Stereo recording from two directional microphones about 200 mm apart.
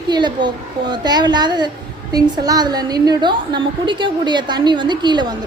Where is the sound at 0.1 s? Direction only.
20° right (ahead or behind).